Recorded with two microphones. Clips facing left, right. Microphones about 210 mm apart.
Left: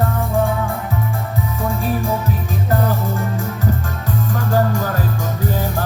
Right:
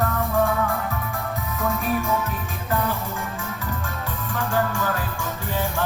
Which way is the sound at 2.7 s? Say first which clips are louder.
Left 5 dB; 40° left (ahead or behind).